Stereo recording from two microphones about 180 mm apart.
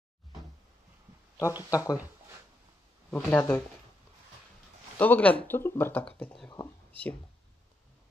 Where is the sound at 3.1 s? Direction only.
10° left (ahead or behind).